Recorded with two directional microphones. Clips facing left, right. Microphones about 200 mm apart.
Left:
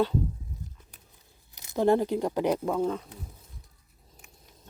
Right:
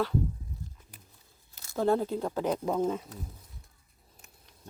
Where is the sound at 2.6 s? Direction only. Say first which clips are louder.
Left 1 dB; 10° right (ahead or behind).